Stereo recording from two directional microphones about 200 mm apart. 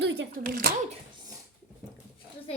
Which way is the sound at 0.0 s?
55° right (ahead or behind).